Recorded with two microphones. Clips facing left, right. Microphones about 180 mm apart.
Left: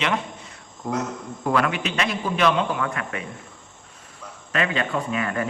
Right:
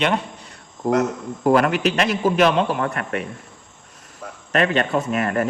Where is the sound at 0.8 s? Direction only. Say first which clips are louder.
Right 8 dB; 50° right (ahead or behind).